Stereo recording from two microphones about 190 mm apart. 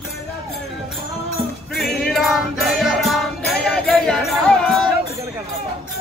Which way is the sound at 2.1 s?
Centre (ahead or behind).